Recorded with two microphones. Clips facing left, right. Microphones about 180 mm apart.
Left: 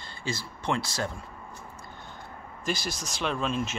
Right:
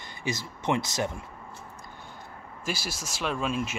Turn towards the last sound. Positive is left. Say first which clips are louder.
# even
turn(degrees=-10)  # may be behind; listen again after turning